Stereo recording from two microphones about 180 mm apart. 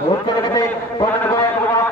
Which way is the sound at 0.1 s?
25° left (ahead or behind).